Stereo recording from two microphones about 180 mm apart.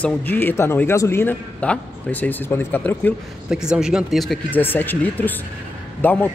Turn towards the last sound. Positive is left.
turn(degrees=10)  # may be behind; listen again after turning